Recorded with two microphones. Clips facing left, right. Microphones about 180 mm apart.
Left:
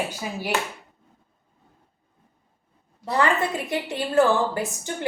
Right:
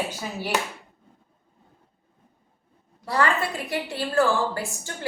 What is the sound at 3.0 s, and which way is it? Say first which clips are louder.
A woman's voice: left 2 dB; 20° left (ahead or behind).